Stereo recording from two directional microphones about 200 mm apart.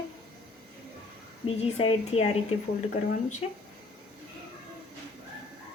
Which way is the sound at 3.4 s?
30° left (ahead or behind).